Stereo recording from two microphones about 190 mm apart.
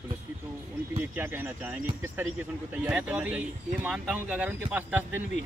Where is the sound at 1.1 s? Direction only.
10° right (ahead or behind).